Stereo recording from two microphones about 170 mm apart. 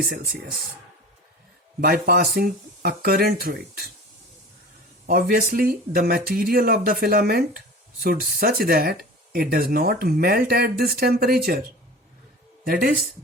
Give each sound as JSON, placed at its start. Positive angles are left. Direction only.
{"t": 0.0, "sound": "speech", "side_deg": -60}
{"t": 1.8, "sound": "speech", "side_deg": -60}
{"t": 5.0, "sound": "speech", "side_deg": -60}
{"t": 12.6, "sound": "speech", "side_deg": -60}